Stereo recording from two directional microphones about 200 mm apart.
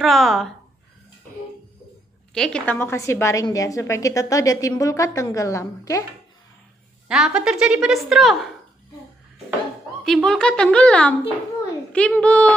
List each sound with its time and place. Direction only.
0.0 s a woman's voice: centre (ahead or behind)
2.3 s a woman's voice: 5° left (ahead or behind)
7.1 s a woman's voice: 5° right (ahead or behind)
10.0 s a woman's voice: centre (ahead or behind)